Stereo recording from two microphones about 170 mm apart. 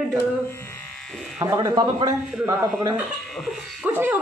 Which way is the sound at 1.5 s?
25° right (ahead or behind).